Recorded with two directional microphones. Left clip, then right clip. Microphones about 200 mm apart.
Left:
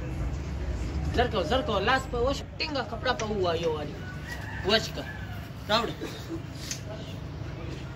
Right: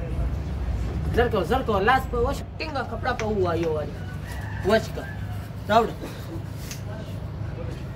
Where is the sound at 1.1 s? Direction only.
50° right (ahead or behind).